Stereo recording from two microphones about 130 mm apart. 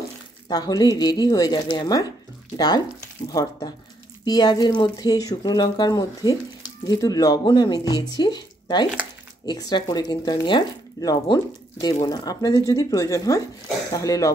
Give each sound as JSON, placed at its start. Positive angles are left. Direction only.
{"t": 0.5, "sound": "speech", "side_deg": 30}